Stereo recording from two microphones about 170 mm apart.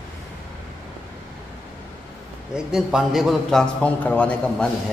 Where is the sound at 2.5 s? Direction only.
5° right (ahead or behind).